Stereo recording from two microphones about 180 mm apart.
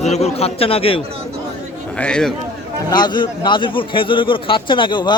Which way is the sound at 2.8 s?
25° left (ahead or behind).